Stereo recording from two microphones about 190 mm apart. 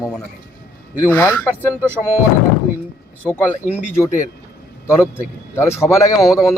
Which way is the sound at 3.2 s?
10° left (ahead or behind).